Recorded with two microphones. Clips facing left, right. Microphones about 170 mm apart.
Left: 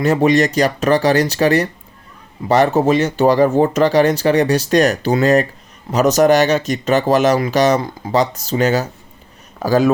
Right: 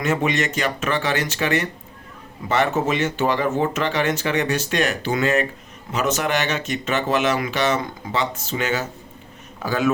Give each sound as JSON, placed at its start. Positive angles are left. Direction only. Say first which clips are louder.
{"t": 0.0, "sound": "speech", "louder": "left 8 dB", "side_deg": 35}